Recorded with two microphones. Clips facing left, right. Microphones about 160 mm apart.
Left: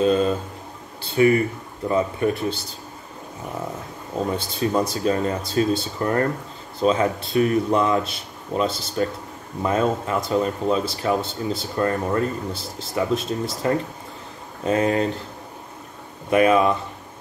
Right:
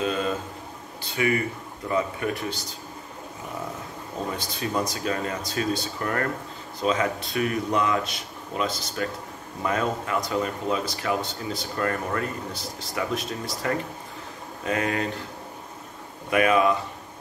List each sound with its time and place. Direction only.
1.0 s speech: 35° left (ahead or behind)
4.4 s speech: 30° left (ahead or behind)
16.3 s speech: 30° left (ahead or behind)